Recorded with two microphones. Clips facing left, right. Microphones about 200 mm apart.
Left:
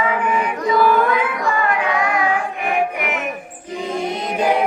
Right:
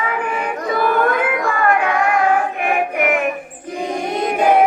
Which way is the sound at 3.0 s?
50° right (ahead or behind).